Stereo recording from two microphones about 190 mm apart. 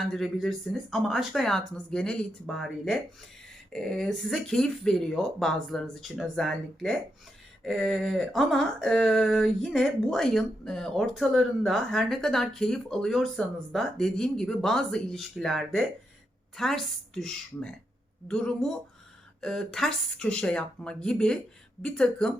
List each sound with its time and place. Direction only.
0.0 s speech: centre (ahead or behind)